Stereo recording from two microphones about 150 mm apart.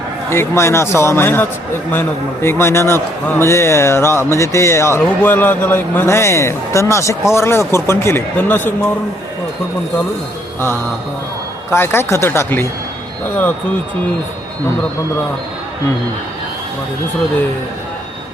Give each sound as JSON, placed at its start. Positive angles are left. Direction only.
{"t": 0.3, "sound": "a man's voice", "side_deg": 15}
{"t": 11.7, "sound": "a man's voice", "side_deg": 15}